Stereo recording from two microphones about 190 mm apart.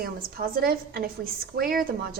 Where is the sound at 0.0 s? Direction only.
50° right (ahead or behind).